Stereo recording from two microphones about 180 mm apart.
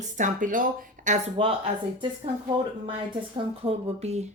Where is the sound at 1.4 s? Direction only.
30° right (ahead or behind).